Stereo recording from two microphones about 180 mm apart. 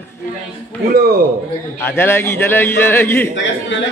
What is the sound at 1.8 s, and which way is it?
A man's voice, 15° left (ahead or behind).